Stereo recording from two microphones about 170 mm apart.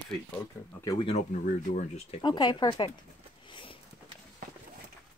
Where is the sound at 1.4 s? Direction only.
50° left (ahead or behind).